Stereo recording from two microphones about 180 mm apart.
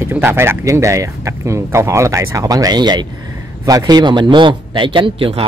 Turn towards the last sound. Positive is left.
turn(degrees=-30)  # may be behind; listen again after turning